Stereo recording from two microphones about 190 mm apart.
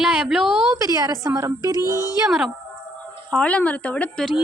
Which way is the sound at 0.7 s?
15° right (ahead or behind).